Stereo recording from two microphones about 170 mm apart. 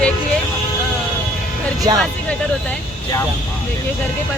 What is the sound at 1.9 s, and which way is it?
Speech, 25° right (ahead or behind).